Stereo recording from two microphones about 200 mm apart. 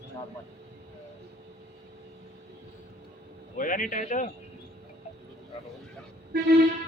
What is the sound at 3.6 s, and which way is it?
Speech, 40° left (ahead or behind).